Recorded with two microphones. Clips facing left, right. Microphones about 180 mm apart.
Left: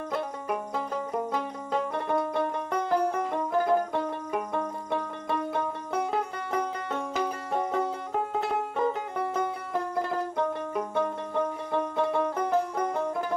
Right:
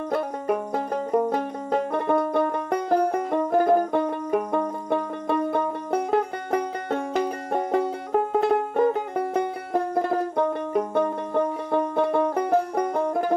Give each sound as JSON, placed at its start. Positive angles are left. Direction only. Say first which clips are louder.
{"t": 0.1, "sound": "banjo", "louder": "right 7 dB", "side_deg": -55}
{"t": 9.9, "sound": "music", "louder": "right 5 dB", "side_deg": -55}